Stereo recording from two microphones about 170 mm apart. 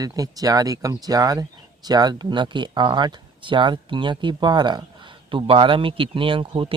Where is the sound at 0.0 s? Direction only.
20° right (ahead or behind).